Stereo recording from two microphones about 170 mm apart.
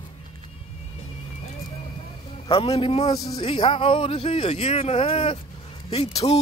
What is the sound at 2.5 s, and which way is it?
Speech, 35° left (ahead or behind).